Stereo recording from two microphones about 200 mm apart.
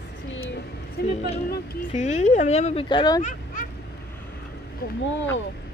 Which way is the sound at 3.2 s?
35° left (ahead or behind).